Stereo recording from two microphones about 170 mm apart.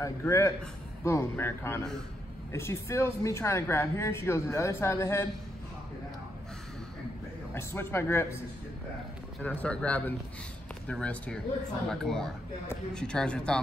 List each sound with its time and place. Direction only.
0.0 s speech: 15° left (ahead or behind)
7.5 s speech: 15° left (ahead or behind)
9.4 s speech: 10° left (ahead or behind)